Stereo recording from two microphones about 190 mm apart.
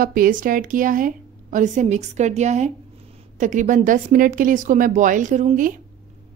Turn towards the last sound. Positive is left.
turn(degrees=-45)  # may be behind; listen again after turning